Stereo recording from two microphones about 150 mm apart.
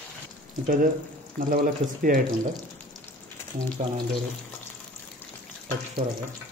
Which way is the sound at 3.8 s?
45° right (ahead or behind).